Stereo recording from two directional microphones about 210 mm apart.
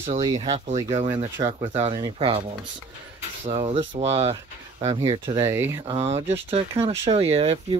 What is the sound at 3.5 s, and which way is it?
Speech, 30° right (ahead or behind).